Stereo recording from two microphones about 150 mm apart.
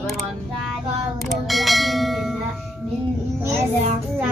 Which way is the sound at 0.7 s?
Centre (ahead or behind).